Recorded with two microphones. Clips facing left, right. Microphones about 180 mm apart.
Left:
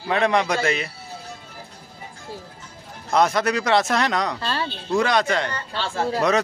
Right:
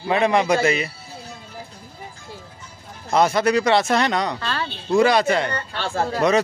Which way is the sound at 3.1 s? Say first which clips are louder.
Right 2 dB; centre (ahead or behind).